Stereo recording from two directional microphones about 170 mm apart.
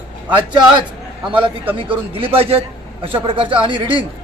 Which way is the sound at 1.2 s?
30° right (ahead or behind).